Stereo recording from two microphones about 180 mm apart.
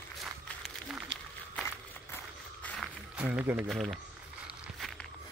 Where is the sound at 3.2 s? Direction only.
10° right (ahead or behind).